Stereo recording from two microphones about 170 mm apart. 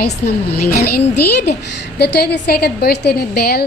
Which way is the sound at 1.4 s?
75° left (ahead or behind).